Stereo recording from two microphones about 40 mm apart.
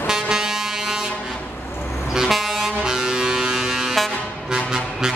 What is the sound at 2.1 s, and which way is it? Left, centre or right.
Music, centre.